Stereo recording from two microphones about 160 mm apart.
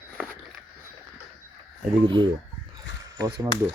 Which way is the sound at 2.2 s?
30° right (ahead or behind).